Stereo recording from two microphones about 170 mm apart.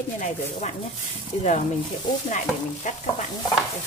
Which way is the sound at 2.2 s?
45° left (ahead or behind).